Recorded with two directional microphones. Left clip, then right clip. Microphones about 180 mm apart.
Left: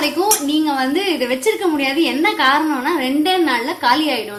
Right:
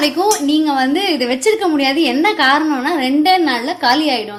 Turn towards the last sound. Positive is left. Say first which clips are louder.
# right 2 dB
turn(degrees=-40)  # may be behind; listen again after turning